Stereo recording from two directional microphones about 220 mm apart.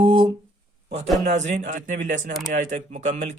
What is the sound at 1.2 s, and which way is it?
Speech, 30° right (ahead or behind).